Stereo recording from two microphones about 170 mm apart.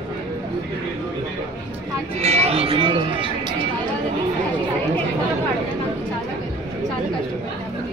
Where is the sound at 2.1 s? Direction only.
40° right (ahead or behind).